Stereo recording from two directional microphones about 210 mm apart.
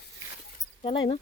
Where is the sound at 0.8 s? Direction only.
25° left (ahead or behind).